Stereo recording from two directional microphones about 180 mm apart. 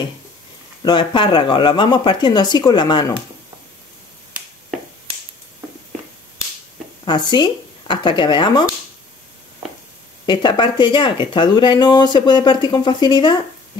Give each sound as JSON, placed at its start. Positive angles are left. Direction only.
{"t": 0.8, "sound": "speech", "side_deg": 25}
{"t": 7.1, "sound": "speech", "side_deg": 25}
{"t": 10.2, "sound": "speech", "side_deg": 25}